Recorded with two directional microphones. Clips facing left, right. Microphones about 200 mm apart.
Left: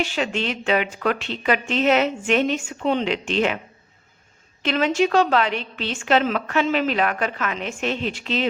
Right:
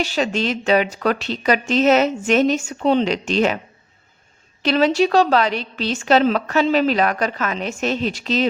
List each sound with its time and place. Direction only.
0.0 s a woman's voice: 40° right (ahead or behind)
4.6 s a woman's voice: 35° right (ahead or behind)